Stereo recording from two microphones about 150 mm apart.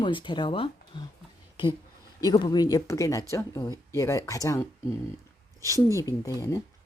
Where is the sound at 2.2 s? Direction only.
30° left (ahead or behind).